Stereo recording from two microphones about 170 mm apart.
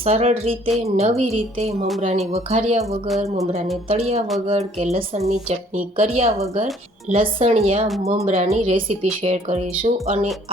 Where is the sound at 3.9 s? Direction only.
35° right (ahead or behind).